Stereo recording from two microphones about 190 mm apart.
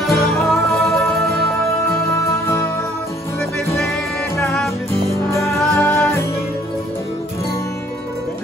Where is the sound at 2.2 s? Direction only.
15° left (ahead or behind).